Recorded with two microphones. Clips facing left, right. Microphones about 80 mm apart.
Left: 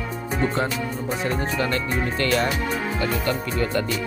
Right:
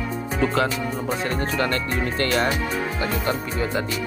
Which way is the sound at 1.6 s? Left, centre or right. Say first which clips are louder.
Even; right.